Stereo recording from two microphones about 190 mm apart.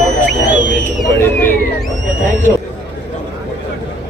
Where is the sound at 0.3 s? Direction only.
70° left (ahead or behind).